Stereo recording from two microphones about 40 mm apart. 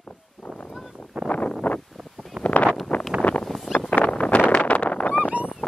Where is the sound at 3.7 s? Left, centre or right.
Left.